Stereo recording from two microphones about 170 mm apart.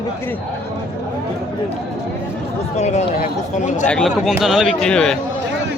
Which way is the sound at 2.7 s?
40° left (ahead or behind).